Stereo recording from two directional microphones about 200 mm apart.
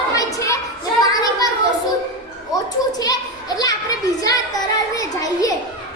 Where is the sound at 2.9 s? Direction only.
20° left (ahead or behind).